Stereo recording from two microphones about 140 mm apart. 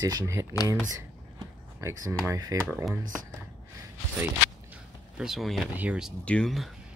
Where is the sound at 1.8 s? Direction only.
20° right (ahead or behind).